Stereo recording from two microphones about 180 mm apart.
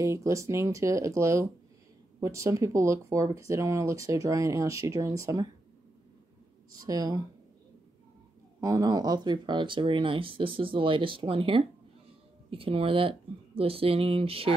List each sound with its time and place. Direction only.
0.0 s speech: 15° right (ahead or behind)
6.8 s speech: 20° right (ahead or behind)
8.5 s speech: 20° right (ahead or behind)